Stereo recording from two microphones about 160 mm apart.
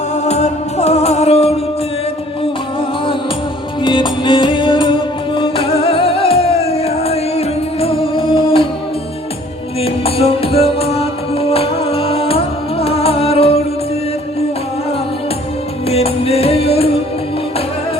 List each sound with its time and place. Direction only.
0.3 s music: 40° left (ahead or behind)
3.8 s music: 30° left (ahead or behind)
9.8 s music: 40° left (ahead or behind)
15.9 s music: 40° left (ahead or behind)